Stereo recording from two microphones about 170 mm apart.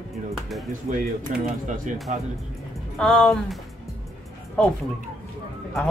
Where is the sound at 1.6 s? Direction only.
50° right (ahead or behind).